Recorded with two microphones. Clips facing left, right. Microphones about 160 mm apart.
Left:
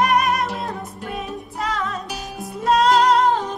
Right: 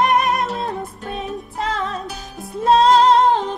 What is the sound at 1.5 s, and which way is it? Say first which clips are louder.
Music: right 1 dB; 25° right (ahead or behind).